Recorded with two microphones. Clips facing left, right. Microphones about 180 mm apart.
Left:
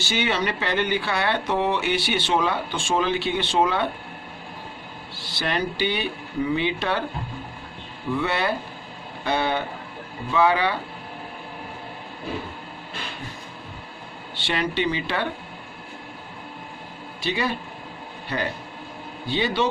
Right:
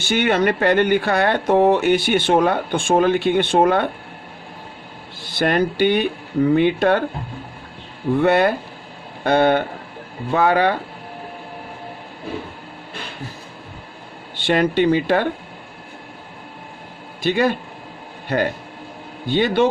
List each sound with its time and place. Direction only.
0.0 s speech: 55° right (ahead or behind)
5.2 s speech: 50° right (ahead or behind)
8.1 s speech: 50° right (ahead or behind)
14.3 s speech: 50° right (ahead or behind)
17.2 s speech: 50° right (ahead or behind)